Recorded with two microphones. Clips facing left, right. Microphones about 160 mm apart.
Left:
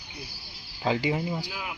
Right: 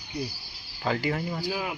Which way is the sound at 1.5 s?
40° right (ahead or behind).